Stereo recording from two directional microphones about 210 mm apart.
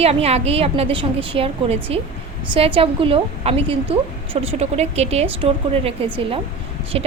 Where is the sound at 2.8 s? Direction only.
25° right (ahead or behind).